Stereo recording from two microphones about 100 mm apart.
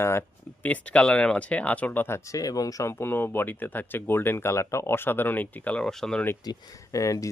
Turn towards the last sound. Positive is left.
turn(degrees=35)  # may be behind; listen again after turning